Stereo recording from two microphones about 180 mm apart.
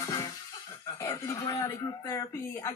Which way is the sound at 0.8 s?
20° left (ahead or behind).